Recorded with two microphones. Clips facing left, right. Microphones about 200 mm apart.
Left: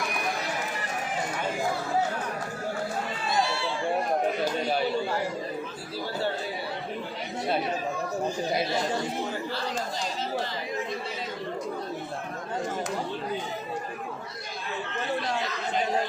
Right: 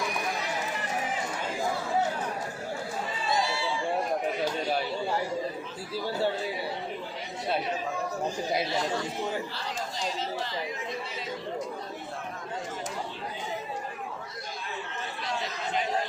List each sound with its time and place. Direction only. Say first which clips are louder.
3.2 s run: left 1 dB; 60° left (ahead or behind)